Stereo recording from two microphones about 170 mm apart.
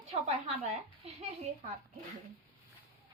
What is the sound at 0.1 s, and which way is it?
A woman's voice, 35° right (ahead or behind).